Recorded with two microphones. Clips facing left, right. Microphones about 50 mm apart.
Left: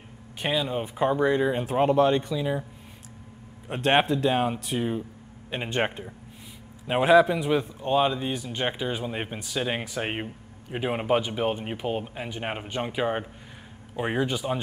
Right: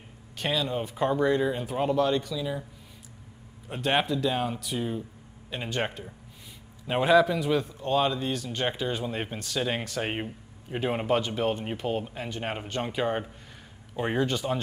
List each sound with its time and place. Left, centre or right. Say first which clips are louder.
0.4 s speech: left 2 dB; centre
1.5 s speech: left 5 dB; left
3.8 s speech: left 4 dB; left
6.9 s speech: left 3 dB; centre